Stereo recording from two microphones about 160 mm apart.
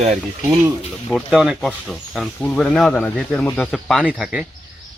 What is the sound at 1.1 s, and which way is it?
Speech, centre (ahead or behind).